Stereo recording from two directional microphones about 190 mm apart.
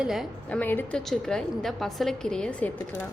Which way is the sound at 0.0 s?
Centre (ahead or behind).